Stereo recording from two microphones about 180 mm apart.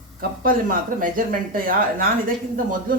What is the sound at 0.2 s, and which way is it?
Speech, 50° right (ahead or behind).